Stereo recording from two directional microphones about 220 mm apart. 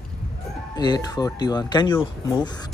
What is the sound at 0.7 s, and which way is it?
Speech, 20° left (ahead or behind).